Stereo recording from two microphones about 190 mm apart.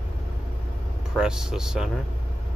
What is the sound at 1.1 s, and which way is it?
Speech, 5° right (ahead or behind).